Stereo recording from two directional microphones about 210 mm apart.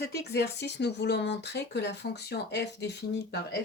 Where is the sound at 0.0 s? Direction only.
50° left (ahead or behind).